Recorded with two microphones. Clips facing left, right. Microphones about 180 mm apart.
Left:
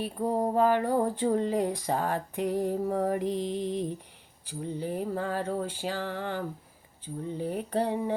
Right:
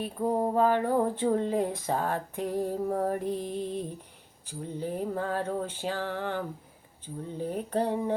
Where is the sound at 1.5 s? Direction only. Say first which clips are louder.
Even; 15° left (ahead or behind).